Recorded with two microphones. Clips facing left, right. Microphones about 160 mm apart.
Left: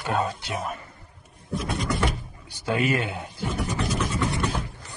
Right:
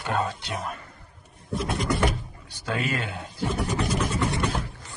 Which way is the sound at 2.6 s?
15° left (ahead or behind).